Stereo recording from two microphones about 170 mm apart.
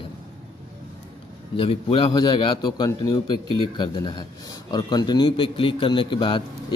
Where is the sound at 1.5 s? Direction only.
30° left (ahead or behind).